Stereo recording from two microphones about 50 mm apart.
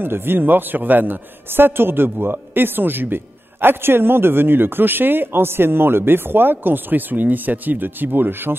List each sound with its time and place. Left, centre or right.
0.0 s a man's voice: right